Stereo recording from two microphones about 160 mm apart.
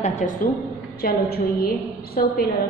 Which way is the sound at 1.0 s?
70° left (ahead or behind).